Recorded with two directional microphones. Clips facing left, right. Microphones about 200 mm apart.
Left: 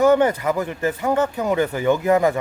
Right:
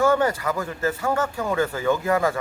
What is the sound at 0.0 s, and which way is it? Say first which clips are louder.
Speech: left 4 dB; 20° left (ahead or behind).